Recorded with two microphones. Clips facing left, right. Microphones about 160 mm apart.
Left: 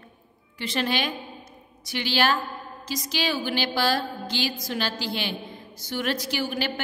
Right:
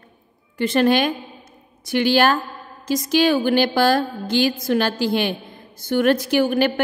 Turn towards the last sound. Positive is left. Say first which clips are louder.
# right 10 dB
turn(degrees=-55)  # may be behind; listen again after turning